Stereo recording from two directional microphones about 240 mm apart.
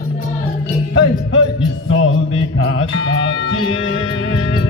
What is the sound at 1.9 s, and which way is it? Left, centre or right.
Music, left.